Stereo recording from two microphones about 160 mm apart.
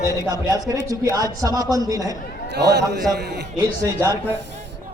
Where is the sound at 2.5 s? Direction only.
90° right.